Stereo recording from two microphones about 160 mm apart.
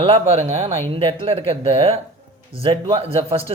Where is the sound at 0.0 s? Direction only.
40° right (ahead or behind).